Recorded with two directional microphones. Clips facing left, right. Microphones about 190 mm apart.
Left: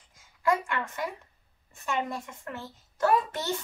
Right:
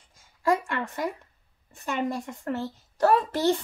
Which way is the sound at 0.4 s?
35° right (ahead or behind).